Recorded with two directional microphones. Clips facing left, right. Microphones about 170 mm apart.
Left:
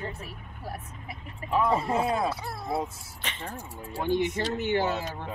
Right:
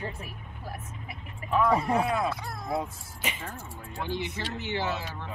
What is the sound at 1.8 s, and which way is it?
Speech, 25° left (ahead or behind).